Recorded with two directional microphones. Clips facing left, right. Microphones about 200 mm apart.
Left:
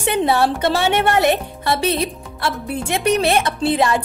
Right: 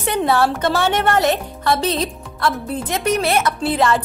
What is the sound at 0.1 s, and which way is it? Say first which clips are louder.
Speech: even; 25° left (ahead or behind).